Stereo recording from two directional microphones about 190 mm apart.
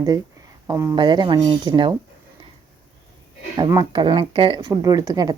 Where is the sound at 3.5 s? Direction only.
20° right (ahead or behind).